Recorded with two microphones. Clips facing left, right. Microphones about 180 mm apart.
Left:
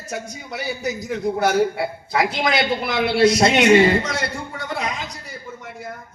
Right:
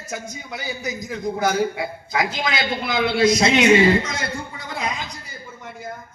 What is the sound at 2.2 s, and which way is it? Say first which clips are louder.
Speech: left 5 dB; 65° left (ahead or behind).